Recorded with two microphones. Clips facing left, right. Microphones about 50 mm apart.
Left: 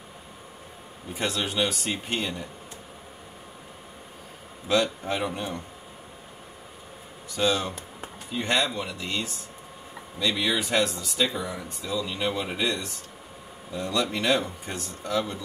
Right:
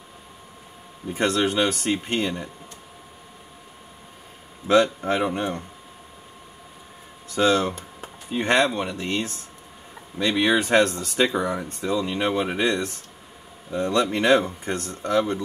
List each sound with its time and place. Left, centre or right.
1.1 s speech: right
4.6 s speech: right
7.2 s speech: right